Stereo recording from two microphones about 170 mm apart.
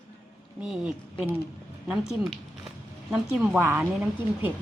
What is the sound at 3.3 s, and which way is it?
Speech, 5° right (ahead or behind).